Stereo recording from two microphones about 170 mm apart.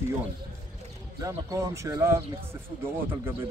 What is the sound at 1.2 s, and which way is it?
Speech, 20° right (ahead or behind).